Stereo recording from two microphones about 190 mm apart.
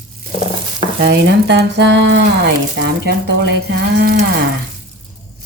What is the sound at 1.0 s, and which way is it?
Speech, 60° right (ahead or behind).